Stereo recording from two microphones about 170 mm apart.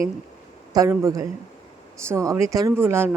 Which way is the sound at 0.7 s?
20° right (ahead or behind).